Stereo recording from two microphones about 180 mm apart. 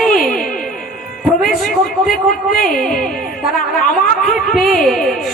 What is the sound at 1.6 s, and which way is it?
A man's voice, 50° left (ahead or behind).